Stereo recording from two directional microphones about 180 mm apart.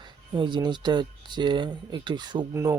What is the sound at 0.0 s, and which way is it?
Speech, 25° right (ahead or behind).